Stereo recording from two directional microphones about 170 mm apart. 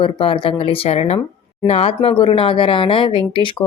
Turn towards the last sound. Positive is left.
turn(degrees=30)  # may be behind; listen again after turning